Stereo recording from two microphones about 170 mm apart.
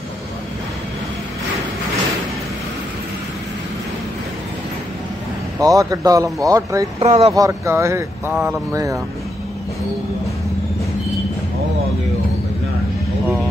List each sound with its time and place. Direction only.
5.6 s speech: 20° right (ahead or behind)
7.0 s speech: 35° right (ahead or behind)
7.3 s speech: 20° right (ahead or behind)